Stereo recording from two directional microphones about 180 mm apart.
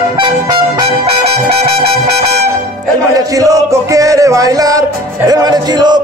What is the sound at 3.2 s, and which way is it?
Music, 20° right (ahead or behind).